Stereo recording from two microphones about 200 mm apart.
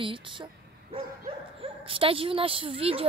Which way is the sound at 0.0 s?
25° right (ahead or behind).